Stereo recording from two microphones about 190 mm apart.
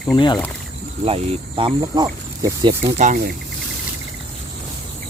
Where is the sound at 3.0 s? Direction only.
40° right (ahead or behind).